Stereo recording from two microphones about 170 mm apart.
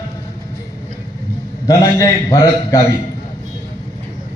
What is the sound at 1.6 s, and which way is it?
A man's voice, 20° left (ahead or behind).